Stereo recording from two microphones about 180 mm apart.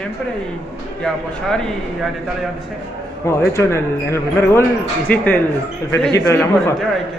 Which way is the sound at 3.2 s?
15° left (ahead or behind).